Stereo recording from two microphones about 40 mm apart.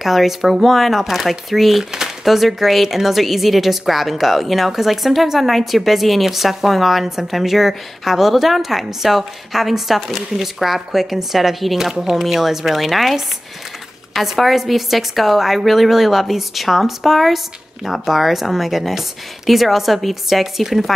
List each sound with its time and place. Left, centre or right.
0.0 s a woman's voice: centre